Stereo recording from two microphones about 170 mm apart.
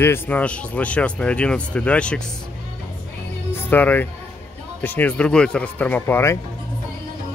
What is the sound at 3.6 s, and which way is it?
Speech, 10° left (ahead or behind).